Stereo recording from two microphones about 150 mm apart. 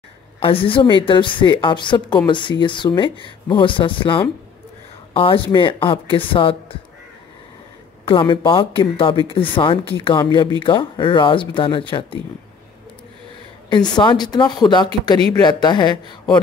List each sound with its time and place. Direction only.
0.4 s a woman's voice: 35° left (ahead or behind)
8.0 s a woman's voice: 35° left (ahead or behind)
13.7 s speech: 30° left (ahead or behind)